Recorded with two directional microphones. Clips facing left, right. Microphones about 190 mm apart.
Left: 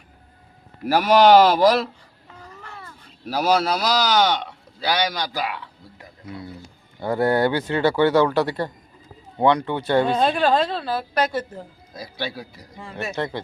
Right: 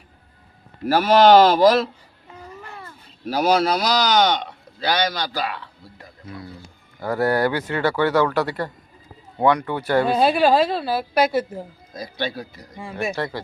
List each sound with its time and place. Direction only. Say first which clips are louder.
0.9 s speech: right 1 dB; 10° left (ahead or behind)
3.2 s speech: right 2 dB; centre (ahead or behind); by 10.1 s 25° left (ahead or behind)
10.1 s a woman's voice: right 2 dB; 10° right (ahead or behind)
11.9 s speech: right 3 dB; 5° left (ahead or behind)
12.7 s a woman's voice: right 4 dB; 10° right (ahead or behind)
13.1 s speech: even; 20° left (ahead or behind)